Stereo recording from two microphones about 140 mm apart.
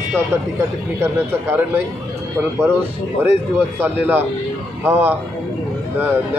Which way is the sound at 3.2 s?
15° right (ahead or behind).